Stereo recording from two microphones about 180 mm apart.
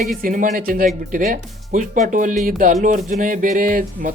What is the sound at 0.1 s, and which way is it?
Speech, 50° right (ahead or behind).